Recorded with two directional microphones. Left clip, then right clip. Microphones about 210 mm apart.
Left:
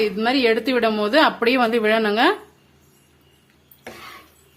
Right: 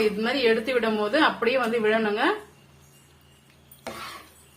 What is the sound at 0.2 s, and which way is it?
A woman's voice, 55° left (ahead or behind).